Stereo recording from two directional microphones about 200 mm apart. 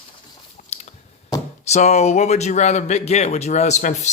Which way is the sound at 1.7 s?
35° left (ahead or behind).